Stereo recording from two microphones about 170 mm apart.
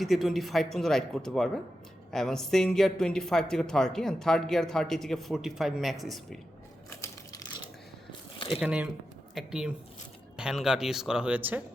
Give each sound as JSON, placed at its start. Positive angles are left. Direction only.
{"t": 0.0, "sound": "speech", "side_deg": 0}
{"t": 8.4, "sound": "a sound", "side_deg": 30}
{"t": 8.6, "sound": "speech", "side_deg": -5}